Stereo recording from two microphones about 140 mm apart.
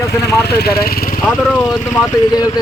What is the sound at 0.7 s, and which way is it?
Speech, 90° left.